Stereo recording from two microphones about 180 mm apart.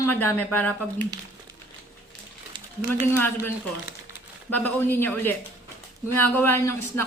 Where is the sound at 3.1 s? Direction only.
10° left (ahead or behind).